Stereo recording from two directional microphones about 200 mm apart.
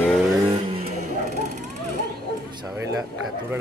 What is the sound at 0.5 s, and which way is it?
Vehicle, 30° right (ahead or behind).